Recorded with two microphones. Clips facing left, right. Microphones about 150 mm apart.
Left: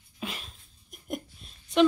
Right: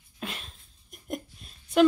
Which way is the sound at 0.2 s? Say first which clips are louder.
Even; centre (ahead or behind).